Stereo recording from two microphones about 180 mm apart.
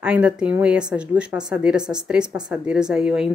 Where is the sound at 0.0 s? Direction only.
5° right (ahead or behind).